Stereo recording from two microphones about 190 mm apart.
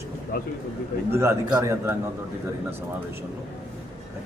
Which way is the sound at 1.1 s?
15° right (ahead or behind).